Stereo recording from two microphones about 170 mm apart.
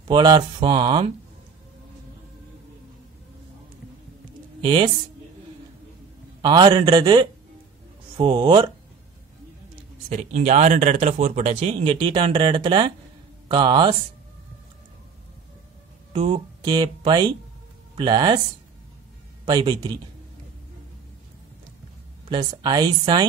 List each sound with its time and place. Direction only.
0.1 s speech: 25° right (ahead or behind)
4.6 s speech: 30° right (ahead or behind)
6.4 s speech: 25° right (ahead or behind)
10.0 s speech: 40° right (ahead or behind); by 13.9 s 25° right (ahead or behind)
16.1 s speech: 30° right (ahead or behind)
19.4 s speech: 25° right (ahead or behind)
22.3 s speech: 25° right (ahead or behind)